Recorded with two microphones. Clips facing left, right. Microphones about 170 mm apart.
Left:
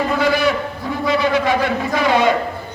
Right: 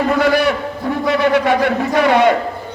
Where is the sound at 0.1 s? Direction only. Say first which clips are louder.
Right 4 dB; 60° right (ahead or behind).